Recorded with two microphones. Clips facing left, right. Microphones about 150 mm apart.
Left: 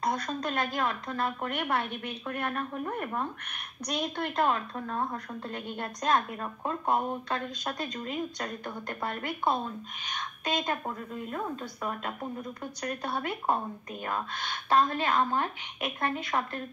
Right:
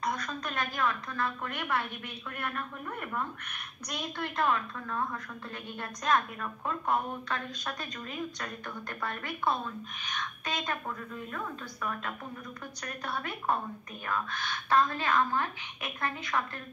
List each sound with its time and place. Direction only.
0.0 s a woman's voice: 30° left (ahead or behind)